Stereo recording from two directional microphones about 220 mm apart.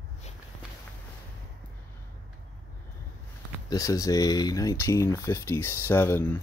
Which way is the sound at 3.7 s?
15° left (ahead or behind).